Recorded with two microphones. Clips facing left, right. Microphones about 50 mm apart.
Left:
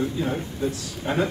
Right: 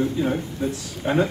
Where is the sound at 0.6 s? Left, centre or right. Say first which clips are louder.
Even; right.